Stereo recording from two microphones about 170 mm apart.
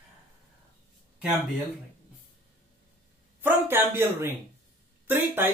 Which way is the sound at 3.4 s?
15° right (ahead or behind).